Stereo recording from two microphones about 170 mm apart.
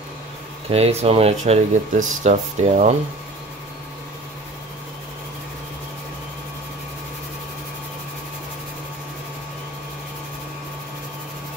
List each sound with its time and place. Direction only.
0.7 s speech: 35° right (ahead or behind)